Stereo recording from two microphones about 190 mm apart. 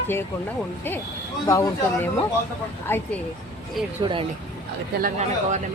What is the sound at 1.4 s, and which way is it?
Speech, 15° left (ahead or behind).